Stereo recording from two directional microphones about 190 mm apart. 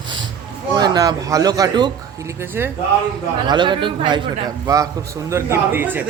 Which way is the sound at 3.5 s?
25° right (ahead or behind).